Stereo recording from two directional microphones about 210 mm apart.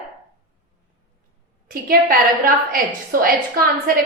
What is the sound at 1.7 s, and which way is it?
A woman's voice, 45° right (ahead or behind).